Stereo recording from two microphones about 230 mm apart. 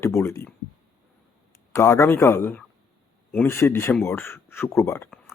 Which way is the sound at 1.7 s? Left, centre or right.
Centre.